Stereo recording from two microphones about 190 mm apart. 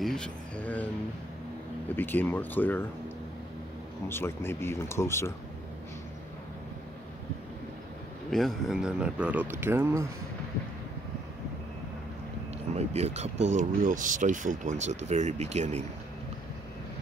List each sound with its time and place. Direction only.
0.0 s speech: 5° left (ahead or behind)
2.0 s speech: 10° left (ahead or behind)
4.1 s speech: 10° left (ahead or behind)
8.3 s speech: centre (ahead or behind)
12.7 s speech: 35° right (ahead or behind)